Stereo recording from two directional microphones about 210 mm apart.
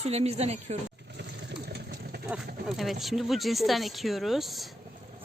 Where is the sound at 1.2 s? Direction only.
50° right (ahead or behind).